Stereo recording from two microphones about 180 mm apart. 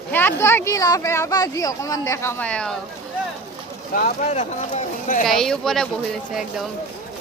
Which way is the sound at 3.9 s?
45° left (ahead or behind).